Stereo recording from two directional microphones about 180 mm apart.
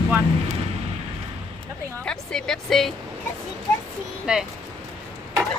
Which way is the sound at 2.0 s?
5° left (ahead or behind).